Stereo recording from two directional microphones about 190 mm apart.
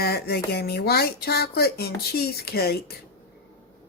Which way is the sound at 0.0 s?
55° left (ahead or behind).